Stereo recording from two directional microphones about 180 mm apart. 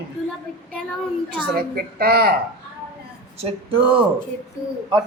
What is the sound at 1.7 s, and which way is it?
Speech, 55° right (ahead or behind).